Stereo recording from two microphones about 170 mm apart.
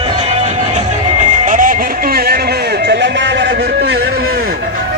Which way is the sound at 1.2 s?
45° right (ahead or behind).